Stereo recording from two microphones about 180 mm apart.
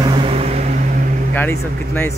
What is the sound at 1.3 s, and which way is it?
Speech, 10° left (ahead or behind).